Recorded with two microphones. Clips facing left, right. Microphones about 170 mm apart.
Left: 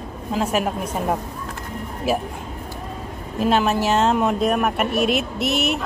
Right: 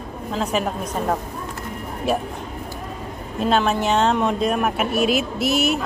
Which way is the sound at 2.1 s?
5° left (ahead or behind).